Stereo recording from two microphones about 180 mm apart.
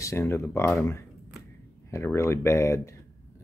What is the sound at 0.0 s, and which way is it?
Speech, 15° left (ahead or behind).